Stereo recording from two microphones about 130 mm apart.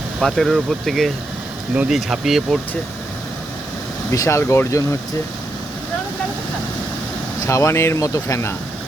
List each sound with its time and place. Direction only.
0.2 s speech: 5° left (ahead or behind)
4.1 s speech: 25° left (ahead or behind)
7.4 s speech: 25° left (ahead or behind)